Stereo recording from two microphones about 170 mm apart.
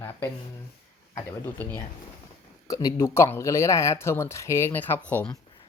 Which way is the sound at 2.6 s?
20° left (ahead or behind).